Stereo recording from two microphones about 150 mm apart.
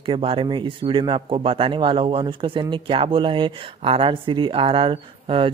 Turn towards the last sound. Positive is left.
turn(degrees=-35)  # may be behind; listen again after turning